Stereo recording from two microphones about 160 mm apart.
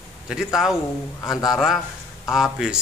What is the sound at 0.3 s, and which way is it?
Speech, centre (ahead or behind).